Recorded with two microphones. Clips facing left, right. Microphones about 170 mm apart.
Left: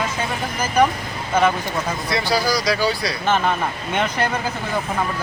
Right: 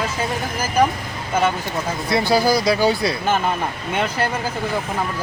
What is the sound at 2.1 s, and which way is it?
Speech, 55° right (ahead or behind).